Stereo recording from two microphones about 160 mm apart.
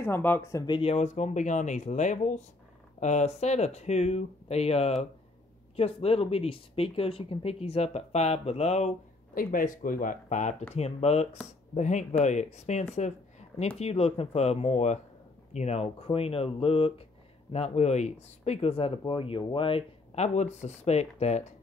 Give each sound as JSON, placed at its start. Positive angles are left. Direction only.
{"t": 0.0, "sound": "speech", "side_deg": 15}
{"t": 0.7, "sound": "speech", "side_deg": 35}
{"t": 9.3, "sound": "speech", "side_deg": 60}
{"t": 10.7, "sound": "speech", "side_deg": 40}